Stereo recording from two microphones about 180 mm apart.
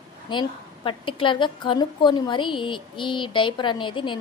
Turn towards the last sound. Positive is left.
turn(degrees=25)  # may be behind; listen again after turning